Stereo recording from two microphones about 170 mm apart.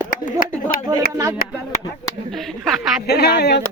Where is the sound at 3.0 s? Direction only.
70° left (ahead or behind).